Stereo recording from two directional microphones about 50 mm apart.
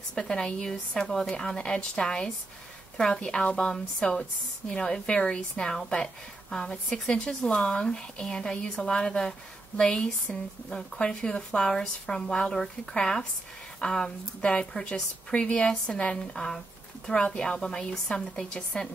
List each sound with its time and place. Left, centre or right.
0.1 s a woman's voice: centre